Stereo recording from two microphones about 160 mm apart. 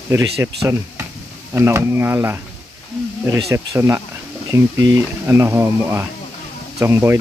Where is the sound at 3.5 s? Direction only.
15° right (ahead or behind).